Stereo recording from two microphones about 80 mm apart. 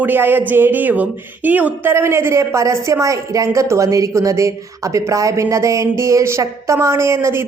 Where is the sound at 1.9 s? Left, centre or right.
Right.